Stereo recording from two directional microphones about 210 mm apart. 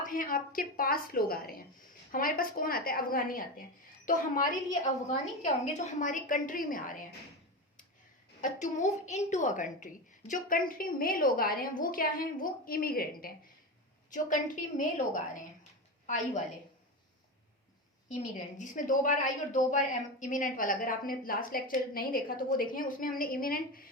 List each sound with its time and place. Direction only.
0.0 s a woman's voice: 40° left (ahead or behind)
8.4 s a woman's voice: 35° left (ahead or behind)
18.1 s a woman's voice: 35° left (ahead or behind)